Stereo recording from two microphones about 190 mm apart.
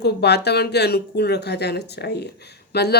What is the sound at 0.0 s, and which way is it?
Speech, 60° left (ahead or behind).